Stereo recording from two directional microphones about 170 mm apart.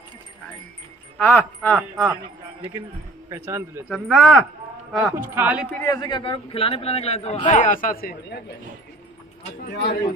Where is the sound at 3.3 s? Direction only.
15° right (ahead or behind).